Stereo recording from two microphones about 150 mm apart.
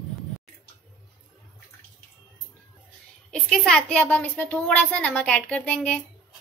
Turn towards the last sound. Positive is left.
turn(degrees=10)  # may be behind; listen again after turning